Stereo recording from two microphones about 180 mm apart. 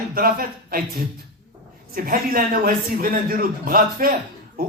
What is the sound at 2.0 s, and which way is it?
Speech, 55° right (ahead or behind).